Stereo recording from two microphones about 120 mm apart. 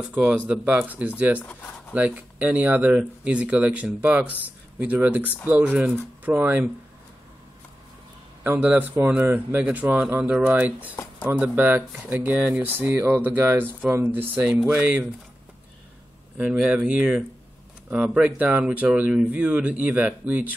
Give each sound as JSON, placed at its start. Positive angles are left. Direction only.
{"t": 0.1, "sound": "speech", "side_deg": -10}
{"t": 1.4, "sound": "speech", "side_deg": 15}
{"t": 2.0, "sound": "speech", "side_deg": -10}
{"t": 8.5, "sound": "speech", "side_deg": -15}
{"t": 16.3, "sound": "speech", "side_deg": -10}